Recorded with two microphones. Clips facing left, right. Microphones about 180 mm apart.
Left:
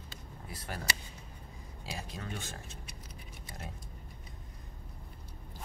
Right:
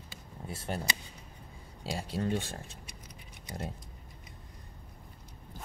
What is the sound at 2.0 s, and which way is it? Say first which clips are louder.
Speech: right 10 dB; 30° right (ahead or behind).